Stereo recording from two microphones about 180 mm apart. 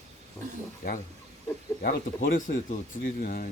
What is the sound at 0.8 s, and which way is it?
Speech, 45° left (ahead or behind).